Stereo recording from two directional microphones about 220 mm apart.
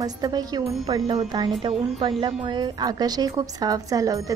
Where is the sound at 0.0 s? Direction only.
20° right (ahead or behind).